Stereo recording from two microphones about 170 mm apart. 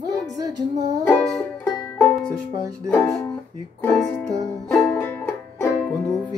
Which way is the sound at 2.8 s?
15° left (ahead or behind).